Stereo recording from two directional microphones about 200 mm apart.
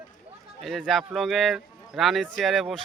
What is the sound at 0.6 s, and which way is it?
Speech, centre (ahead or behind).